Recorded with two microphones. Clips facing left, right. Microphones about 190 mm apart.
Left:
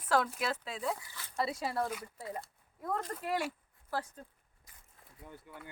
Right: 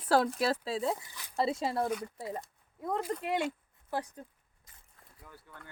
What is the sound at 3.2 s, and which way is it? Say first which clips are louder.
Speech: right 3 dB; 20° right (ahead or behind).